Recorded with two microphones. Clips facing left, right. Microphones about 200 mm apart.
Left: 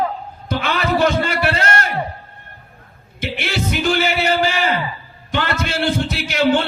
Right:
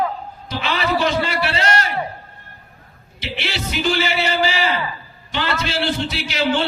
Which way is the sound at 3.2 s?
50° left (ahead or behind).